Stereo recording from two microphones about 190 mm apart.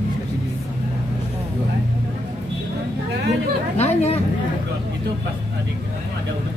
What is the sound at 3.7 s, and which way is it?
Chatter, 35° left (ahead or behind).